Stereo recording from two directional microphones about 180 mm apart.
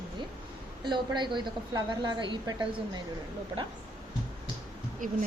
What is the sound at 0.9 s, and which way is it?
A woman's voice, 25° right (ahead or behind).